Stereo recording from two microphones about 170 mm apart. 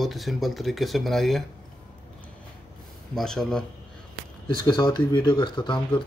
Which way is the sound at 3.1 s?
5° left (ahead or behind).